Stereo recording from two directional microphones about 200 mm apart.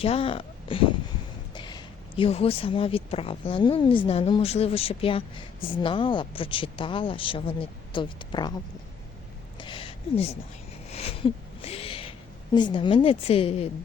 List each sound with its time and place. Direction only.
0.0 s a woman's voice: 30° left (ahead or behind)
9.6 s a sound: 25° left (ahead or behind)
12.5 s speech: 25° left (ahead or behind)